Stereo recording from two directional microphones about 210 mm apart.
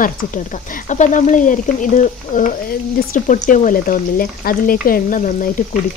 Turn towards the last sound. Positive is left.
turn(degrees=40)  # may be behind; listen again after turning